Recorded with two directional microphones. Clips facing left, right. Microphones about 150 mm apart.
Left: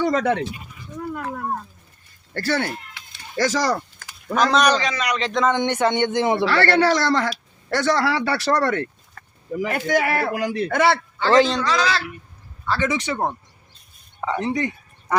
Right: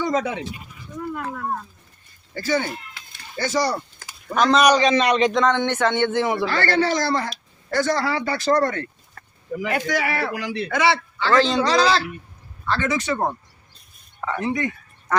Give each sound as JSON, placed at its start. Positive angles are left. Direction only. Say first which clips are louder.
{"t": 0.0, "sound": "speech", "louder": "left 3 dB", "side_deg": 70}
{"t": 2.3, "sound": "speech", "louder": "even", "side_deg": 75}
{"t": 3.3, "sound": "speech", "louder": "left 2 dB", "side_deg": 90}
{"t": 4.4, "sound": "a man's voice", "louder": "right 1 dB", "side_deg": 0}
{"t": 4.8, "sound": "a man's voice", "louder": "right 6 dB", "side_deg": -25}
{"t": 5.3, "sound": "a man's voice", "louder": "right 1 dB", "side_deg": 0}
{"t": 5.5, "sound": "speech", "louder": "left 1 dB", "side_deg": 15}
{"t": 6.4, "sound": "speech", "louder": "left 3 dB", "side_deg": 70}
{"t": 9.6, "sound": "a man's voice", "louder": "left 3 dB", "side_deg": 45}
{"t": 11.7, "sound": "speech", "louder": "right 3 dB", "side_deg": -30}
{"t": 12.6, "sound": "speech", "louder": "even", "side_deg": 15}
{"t": 14.2, "sound": "speech", "louder": "left 1 dB", "side_deg": 20}